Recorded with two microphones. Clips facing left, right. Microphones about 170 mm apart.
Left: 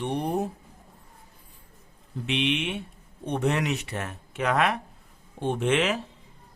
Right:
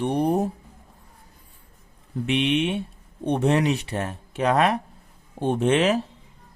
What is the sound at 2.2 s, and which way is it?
Speech, 45° right (ahead or behind).